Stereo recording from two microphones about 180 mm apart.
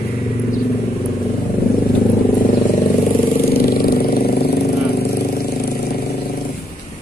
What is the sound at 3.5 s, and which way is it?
Vehicle, 55° left (ahead or behind).